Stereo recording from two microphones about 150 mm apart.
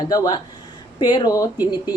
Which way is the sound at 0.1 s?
30° left (ahead or behind).